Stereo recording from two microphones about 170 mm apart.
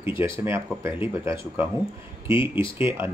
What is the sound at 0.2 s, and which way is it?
Speech, 15° right (ahead or behind).